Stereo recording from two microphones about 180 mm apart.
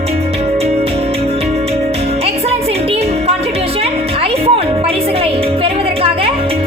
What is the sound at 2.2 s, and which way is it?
Music, 35° right (ahead or behind).